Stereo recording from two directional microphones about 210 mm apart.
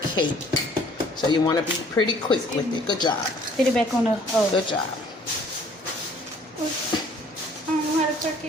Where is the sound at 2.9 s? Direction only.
20° left (ahead or behind).